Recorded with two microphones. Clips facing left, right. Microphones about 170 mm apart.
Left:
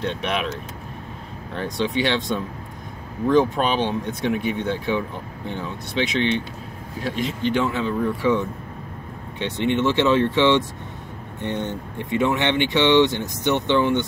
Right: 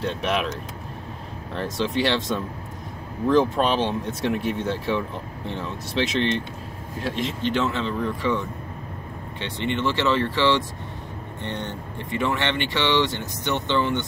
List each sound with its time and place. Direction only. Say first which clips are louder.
0.0 s speech: even; centre (ahead or behind); by 14.0 s 15° left (ahead or behind)